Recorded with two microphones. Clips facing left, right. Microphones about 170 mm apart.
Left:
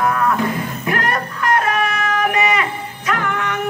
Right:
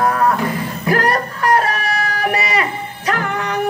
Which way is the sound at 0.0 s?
35° right (ahead or behind).